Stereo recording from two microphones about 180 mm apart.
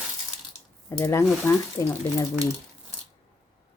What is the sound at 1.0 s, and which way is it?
Speech, 15° left (ahead or behind).